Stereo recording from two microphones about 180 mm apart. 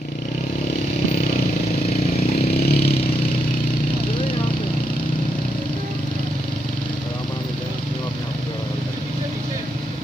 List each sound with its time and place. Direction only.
2.5 s vehicle: 60° left (ahead or behind)